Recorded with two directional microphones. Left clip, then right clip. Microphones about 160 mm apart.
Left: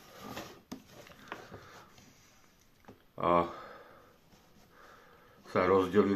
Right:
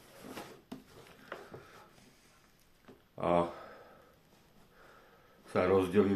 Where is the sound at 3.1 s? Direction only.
15° right (ahead or behind).